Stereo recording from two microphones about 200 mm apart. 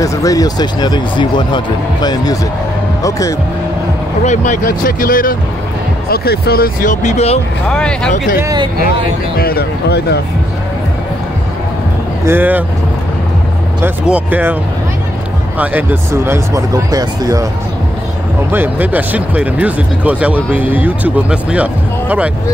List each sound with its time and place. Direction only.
0.0 s speech: 15° left (ahead or behind)
4.2 s speech: 35° left (ahead or behind)
7.7 s speech: 5° left (ahead or behind)
8.4 s speech: 15° right (ahead or behind)
9.4 s speech: 50° left (ahead or behind)
12.3 s speech: 10° right (ahead or behind)
13.8 s speech: 5° right (ahead or behind)
18.5 s speech: 10° right (ahead or behind)